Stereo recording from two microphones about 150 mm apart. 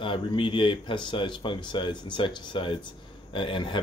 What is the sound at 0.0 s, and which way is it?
Speech, 35° left (ahead or behind).